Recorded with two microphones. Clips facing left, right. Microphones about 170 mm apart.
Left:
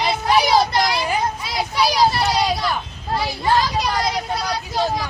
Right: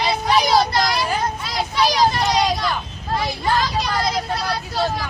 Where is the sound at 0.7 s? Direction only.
20° left (ahead or behind).